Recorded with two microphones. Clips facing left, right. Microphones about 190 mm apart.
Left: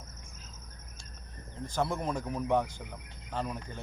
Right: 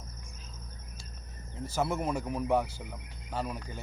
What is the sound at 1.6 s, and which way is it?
Speech, 5° right (ahead or behind).